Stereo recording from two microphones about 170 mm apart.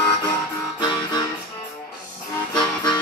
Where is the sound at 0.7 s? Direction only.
25° left (ahead or behind).